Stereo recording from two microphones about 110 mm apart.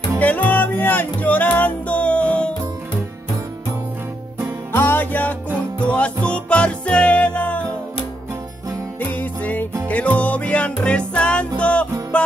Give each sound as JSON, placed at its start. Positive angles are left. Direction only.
{"t": 0.2, "sound": "music", "side_deg": 15}
{"t": 4.7, "sound": "music", "side_deg": 20}
{"t": 9.0, "sound": "music", "side_deg": 15}